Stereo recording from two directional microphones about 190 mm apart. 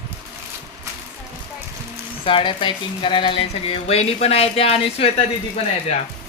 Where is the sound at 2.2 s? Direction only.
25° left (ahead or behind).